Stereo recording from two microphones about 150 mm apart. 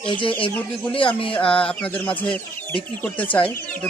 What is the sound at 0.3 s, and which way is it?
Speech, 35° left (ahead or behind).